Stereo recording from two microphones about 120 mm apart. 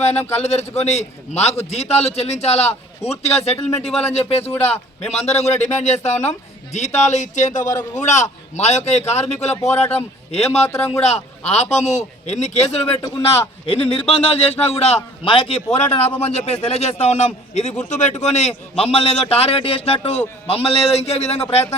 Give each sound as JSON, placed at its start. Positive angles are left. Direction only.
{"t": 0.3, "sound": "a man's voice", "side_deg": 60}
{"t": 10.7, "sound": "speech", "side_deg": 20}
{"t": 11.0, "sound": "a man's voice", "side_deg": 65}
{"t": 18.2, "sound": "a man's voice", "side_deg": 65}